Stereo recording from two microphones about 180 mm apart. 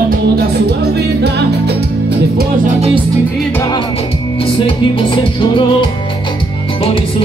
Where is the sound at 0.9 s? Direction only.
65° right (ahead or behind).